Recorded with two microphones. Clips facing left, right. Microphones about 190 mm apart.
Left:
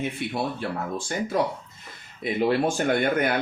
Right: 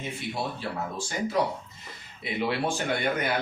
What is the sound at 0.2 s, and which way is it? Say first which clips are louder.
Speech: left 4 dB; 60° left (ahead or behind).